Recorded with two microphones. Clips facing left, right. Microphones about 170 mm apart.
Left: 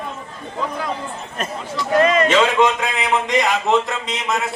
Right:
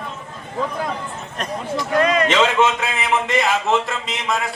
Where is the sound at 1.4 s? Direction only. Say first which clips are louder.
Left 1 dB; 5° left (ahead or behind).